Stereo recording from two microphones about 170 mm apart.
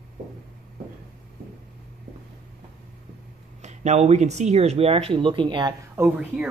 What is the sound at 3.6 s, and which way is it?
Speech, 40° right (ahead or behind).